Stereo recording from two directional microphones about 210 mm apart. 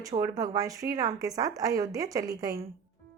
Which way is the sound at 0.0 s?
15° right (ahead or behind).